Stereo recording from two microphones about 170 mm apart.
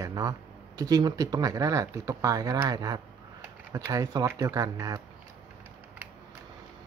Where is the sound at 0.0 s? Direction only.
20° right (ahead or behind).